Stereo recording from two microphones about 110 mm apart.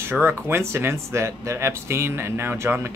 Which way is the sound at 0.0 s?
20° right (ahead or behind).